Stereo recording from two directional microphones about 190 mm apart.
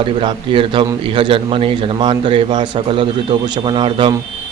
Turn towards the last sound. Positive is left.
turn(degrees=-25)  # may be behind; listen again after turning